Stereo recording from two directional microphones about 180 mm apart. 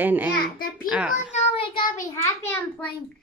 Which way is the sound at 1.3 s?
35° left (ahead or behind).